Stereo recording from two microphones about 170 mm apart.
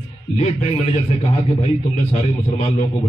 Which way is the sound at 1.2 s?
40° left (ahead or behind).